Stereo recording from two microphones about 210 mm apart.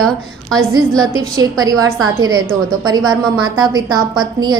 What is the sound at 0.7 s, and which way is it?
A woman's voice, 20° right (ahead or behind).